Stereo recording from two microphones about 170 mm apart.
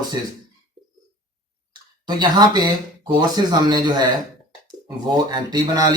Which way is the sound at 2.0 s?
25° right (ahead or behind).